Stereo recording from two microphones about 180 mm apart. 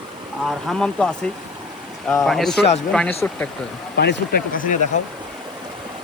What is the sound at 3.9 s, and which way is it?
Speech, 65° left (ahead or behind).